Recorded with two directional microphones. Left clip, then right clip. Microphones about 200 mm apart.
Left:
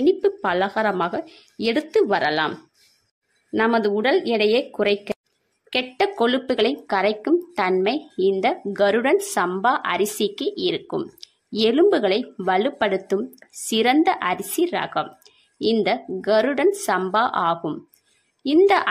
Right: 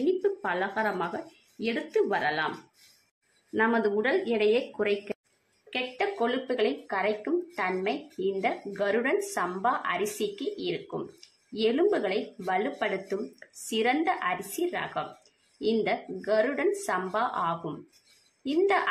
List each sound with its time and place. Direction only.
0.0 s speech: 50° left (ahead or behind)
3.5 s speech: 45° left (ahead or behind)